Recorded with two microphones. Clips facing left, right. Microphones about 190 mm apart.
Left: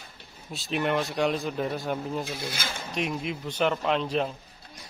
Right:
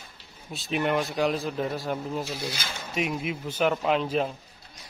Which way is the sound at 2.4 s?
50° left (ahead or behind).